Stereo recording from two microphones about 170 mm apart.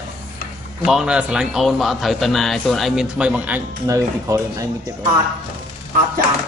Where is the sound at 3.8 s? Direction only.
20° right (ahead or behind).